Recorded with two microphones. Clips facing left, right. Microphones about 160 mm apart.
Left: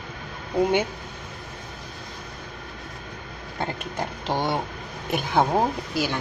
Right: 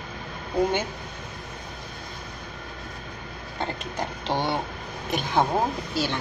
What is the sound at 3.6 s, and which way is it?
A woman's voice, 10° left (ahead or behind).